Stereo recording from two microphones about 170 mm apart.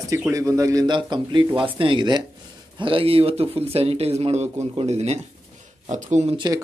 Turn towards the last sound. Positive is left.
turn(degrees=-45)  # may be behind; listen again after turning